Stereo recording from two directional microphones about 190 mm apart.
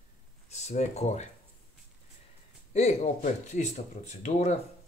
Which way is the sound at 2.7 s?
35° left (ahead or behind).